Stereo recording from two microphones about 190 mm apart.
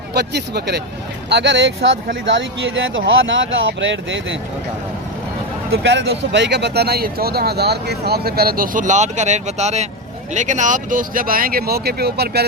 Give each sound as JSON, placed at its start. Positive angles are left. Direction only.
{"t": 0.1, "sound": "speech", "side_deg": -60}
{"t": 2.2, "sound": "speech", "side_deg": -80}
{"t": 5.7, "sound": "speech", "side_deg": -70}